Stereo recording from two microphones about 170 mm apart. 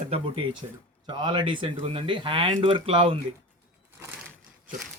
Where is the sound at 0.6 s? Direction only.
30° right (ahead or behind).